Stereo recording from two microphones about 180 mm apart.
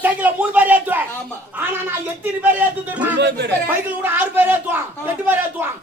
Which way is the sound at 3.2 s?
70° right (ahead or behind).